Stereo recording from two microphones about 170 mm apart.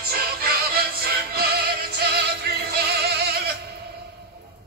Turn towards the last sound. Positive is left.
turn(degrees=-70)  # may be behind; listen again after turning